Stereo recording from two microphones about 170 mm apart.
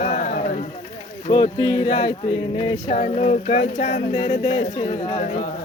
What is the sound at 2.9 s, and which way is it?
Speech, 45° left (ahead or behind).